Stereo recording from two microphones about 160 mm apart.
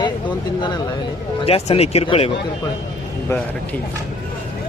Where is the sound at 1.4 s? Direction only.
40° left (ahead or behind).